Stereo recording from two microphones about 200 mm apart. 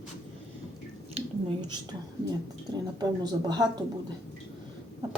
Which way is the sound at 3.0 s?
20° right (ahead or behind).